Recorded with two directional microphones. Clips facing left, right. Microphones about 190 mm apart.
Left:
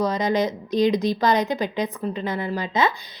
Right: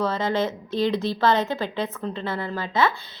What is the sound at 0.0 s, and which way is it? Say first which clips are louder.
A woman's voice: left 2 dB; 15° left (ahead or behind).